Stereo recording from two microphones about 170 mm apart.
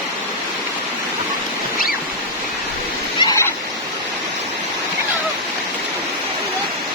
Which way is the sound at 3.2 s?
20° left (ahead or behind).